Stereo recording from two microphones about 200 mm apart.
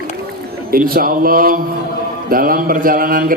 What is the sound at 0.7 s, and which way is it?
A man's voice, 45° right (ahead or behind).